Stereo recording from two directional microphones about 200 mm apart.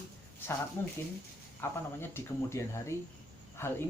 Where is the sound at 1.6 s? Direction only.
10° left (ahead or behind).